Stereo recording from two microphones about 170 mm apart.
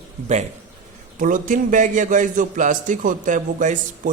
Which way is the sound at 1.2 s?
50° right (ahead or behind).